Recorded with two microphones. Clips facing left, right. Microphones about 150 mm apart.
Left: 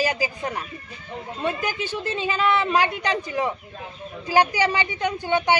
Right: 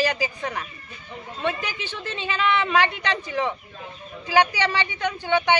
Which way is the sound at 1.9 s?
10° left (ahead or behind).